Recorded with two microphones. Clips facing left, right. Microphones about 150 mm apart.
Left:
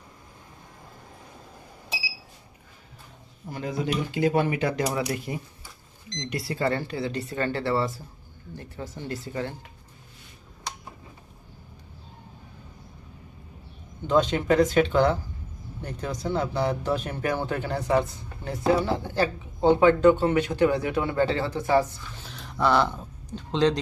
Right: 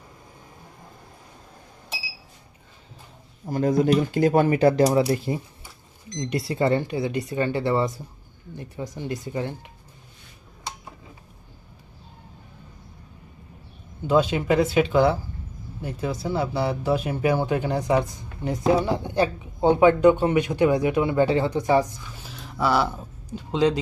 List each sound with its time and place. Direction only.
3.5 s speech: 45° right (ahead or behind); by 9.7 s 15° right (ahead or behind)
14.1 s speech: 10° right (ahead or behind)
22.3 s a sound: centre (ahead or behind)